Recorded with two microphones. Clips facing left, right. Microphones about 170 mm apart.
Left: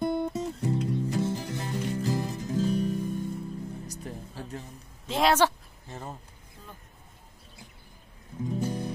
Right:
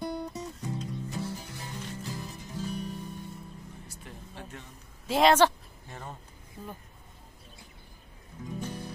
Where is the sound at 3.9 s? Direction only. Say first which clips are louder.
Left 7 dB; 40° left (ahead or behind).